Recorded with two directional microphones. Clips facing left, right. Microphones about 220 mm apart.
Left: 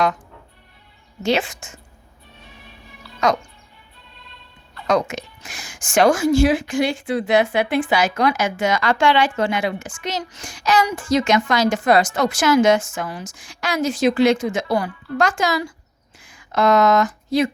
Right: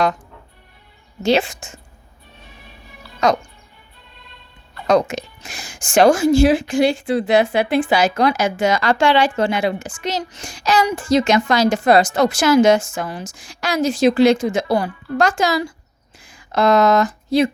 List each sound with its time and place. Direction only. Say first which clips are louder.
1.2 s a woman's voice: right 3 dB; 30° right (ahead or behind)
4.9 s a woman's voice: right 4 dB; 30° right (ahead or behind)